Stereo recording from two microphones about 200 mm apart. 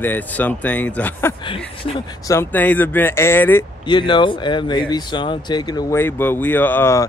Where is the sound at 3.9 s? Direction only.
25° left (ahead or behind).